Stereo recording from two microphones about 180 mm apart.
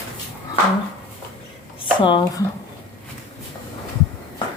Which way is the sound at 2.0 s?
25° left (ahead or behind).